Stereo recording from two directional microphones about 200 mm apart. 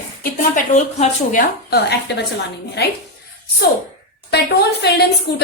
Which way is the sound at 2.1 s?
55° left (ahead or behind).